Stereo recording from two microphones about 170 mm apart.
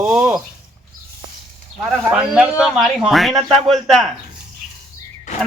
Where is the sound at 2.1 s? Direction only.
5° right (ahead or behind).